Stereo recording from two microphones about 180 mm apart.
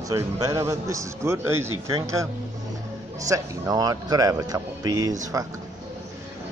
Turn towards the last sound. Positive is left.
turn(degrees=-20)  # may be behind; listen again after turning